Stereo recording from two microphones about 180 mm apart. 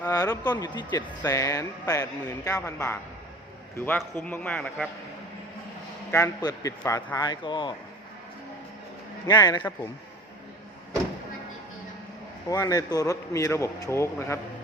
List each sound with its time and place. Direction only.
0.0 s a man's voice: 20° left (ahead or behind)
6.1 s speech: 15° left (ahead or behind)
9.2 s speech: 20° left (ahead or behind)
12.5 s speech: 20° left (ahead or behind)